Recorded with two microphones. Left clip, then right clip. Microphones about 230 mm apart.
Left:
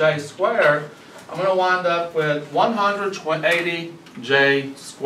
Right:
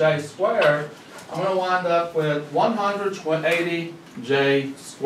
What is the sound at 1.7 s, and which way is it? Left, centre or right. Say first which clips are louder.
A man's voice: left 1 dB; centre.